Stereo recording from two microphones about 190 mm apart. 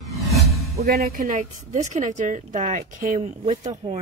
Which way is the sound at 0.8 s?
55° right (ahead or behind).